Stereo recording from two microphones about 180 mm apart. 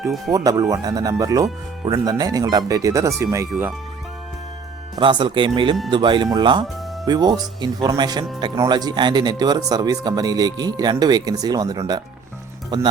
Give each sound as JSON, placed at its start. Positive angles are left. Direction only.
{"t": 0.3, "sound": "speech", "side_deg": -20}
{"t": 4.9, "sound": "speech", "side_deg": -25}